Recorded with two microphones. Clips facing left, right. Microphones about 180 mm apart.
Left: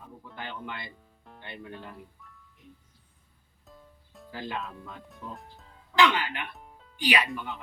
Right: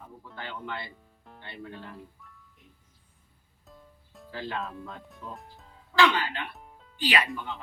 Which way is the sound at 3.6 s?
Centre (ahead or behind).